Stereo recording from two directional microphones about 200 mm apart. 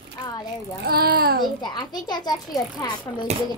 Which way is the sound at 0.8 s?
50° right (ahead or behind).